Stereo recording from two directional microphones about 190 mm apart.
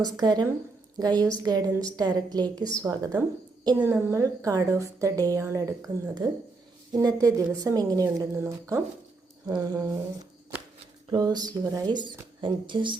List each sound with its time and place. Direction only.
0.0 s a woman's voice: 20° right (ahead or behind)
3.8 s a woman's voice: 10° right (ahead or behind)
11.1 s speech: 20° right (ahead or behind)